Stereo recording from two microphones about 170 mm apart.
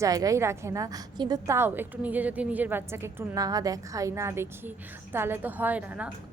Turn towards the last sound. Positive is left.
turn(degrees=-10)  # may be behind; listen again after turning